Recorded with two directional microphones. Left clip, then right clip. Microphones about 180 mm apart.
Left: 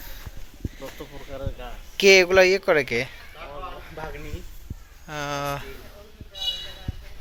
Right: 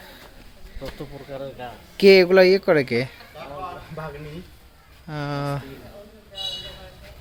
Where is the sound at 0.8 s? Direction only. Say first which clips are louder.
Right 5 dB; 65° left (ahead or behind).